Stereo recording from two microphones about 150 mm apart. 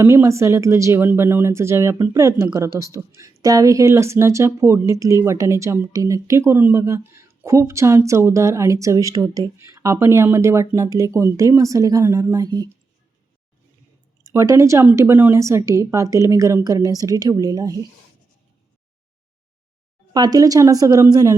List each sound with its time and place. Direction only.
0.0 s speech: 15° right (ahead or behind)
14.3 s speech: 20° right (ahead or behind)
20.1 s speech: 25° right (ahead or behind)